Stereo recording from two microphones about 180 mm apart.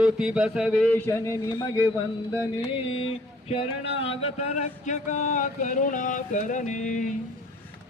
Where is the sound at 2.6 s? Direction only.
30° left (ahead or behind).